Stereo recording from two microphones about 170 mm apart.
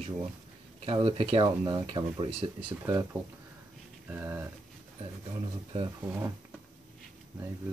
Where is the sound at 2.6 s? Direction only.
10° right (ahead or behind).